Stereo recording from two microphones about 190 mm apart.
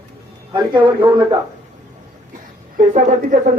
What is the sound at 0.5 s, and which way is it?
Speech, 25° right (ahead or behind).